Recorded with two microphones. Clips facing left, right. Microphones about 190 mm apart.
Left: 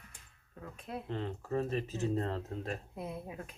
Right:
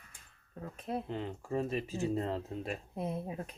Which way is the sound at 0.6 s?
35° right (ahead or behind).